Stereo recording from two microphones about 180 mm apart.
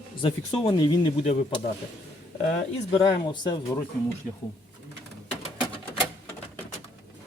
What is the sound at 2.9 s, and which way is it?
Speech, 25° left (ahead or behind).